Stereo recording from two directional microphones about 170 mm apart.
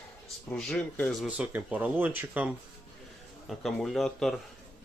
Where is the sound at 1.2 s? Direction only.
10° right (ahead or behind).